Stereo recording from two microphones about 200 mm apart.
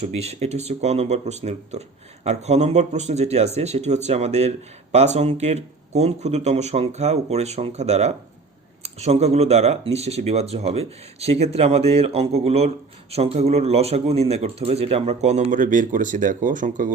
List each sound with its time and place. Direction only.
0.0 s speech: 30° right (ahead or behind)